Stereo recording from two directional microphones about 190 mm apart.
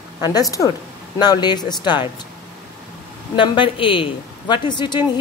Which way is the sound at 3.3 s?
25° left (ahead or behind).